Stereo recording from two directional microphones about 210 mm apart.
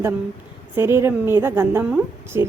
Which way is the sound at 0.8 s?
10° right (ahead or behind).